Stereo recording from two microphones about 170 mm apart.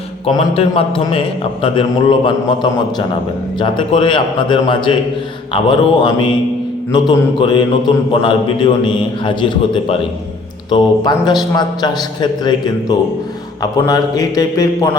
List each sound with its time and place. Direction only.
0.3 s a man's voice: 35° left (ahead or behind)